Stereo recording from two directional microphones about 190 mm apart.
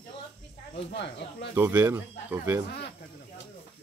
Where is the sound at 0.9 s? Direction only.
65° left (ahead or behind).